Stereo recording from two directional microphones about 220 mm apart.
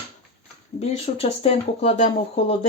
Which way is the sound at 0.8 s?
30° left (ahead or behind).